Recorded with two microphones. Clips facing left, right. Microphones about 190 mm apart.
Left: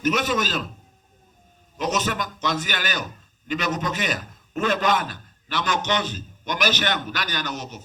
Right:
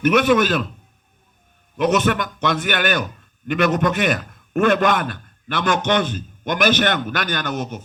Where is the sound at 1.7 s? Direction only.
60° right (ahead or behind).